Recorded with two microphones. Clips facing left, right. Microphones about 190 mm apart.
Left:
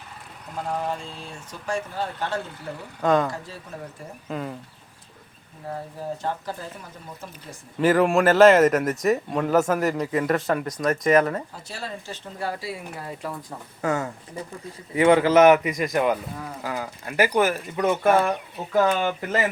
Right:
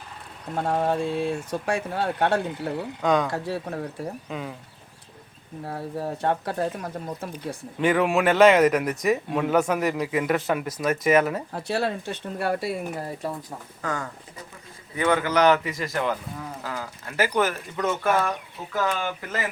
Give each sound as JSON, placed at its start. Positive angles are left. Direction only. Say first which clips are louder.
{"t": 0.5, "sound": "speech", "louder": "right 5 dB", "side_deg": -70}
{"t": 3.0, "sound": "speech", "louder": "left 2 dB", "side_deg": 0}
{"t": 3.3, "sound": "speech", "louder": "right 8 dB", "side_deg": -65}
{"t": 4.3, "sound": "speech", "louder": "left 2 dB", "side_deg": 0}
{"t": 5.6, "sound": "speech", "louder": "right 1 dB", "side_deg": -70}
{"t": 7.8, "sound": "speech", "louder": "left 3 dB", "side_deg": 0}
{"t": 11.5, "sound": "speech", "louder": "right 9 dB", "side_deg": -65}
{"t": 13.8, "sound": "a man's voice", "louder": "left 6 dB", "side_deg": 25}
{"t": 18.0, "sound": "speech", "louder": "left 5 dB", "side_deg": 30}